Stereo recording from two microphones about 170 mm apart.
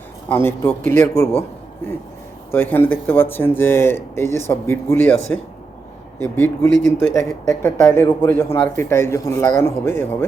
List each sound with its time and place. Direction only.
0.3 s speech: 15° left (ahead or behind)
2.5 s speech: 10° left (ahead or behind)